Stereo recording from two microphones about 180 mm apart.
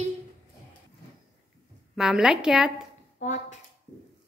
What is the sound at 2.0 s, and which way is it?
Speech, 5° right (ahead or behind).